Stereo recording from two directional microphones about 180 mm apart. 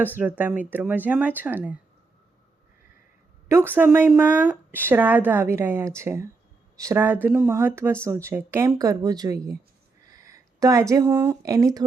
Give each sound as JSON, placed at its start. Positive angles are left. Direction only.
{"t": 0.2, "sound": "speech", "side_deg": -10}
{"t": 3.8, "sound": "speech", "side_deg": -10}